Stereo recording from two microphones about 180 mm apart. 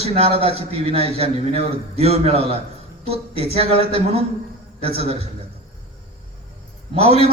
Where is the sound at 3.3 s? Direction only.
30° left (ahead or behind).